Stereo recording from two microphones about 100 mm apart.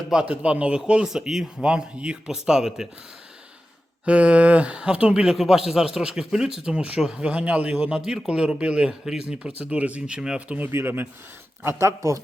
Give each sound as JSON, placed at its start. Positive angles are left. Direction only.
{"t": 0.1, "sound": "speech", "side_deg": -10}
{"t": 4.0, "sound": "speech", "side_deg": -10}
{"t": 10.7, "sound": "speech", "side_deg": -25}